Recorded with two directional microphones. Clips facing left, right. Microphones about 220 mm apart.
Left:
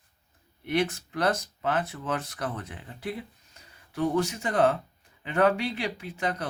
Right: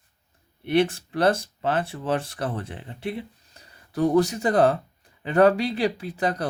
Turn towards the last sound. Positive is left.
turn(degrees=-35)  # may be behind; listen again after turning